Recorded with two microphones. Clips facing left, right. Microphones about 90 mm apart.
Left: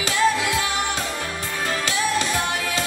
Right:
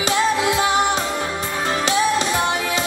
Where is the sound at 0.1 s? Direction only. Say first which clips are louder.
Right 1 dB; 25° right (ahead or behind).